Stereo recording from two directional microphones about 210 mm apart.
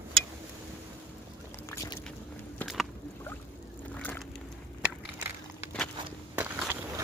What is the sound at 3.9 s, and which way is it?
Vehicle, 10° left (ahead or behind).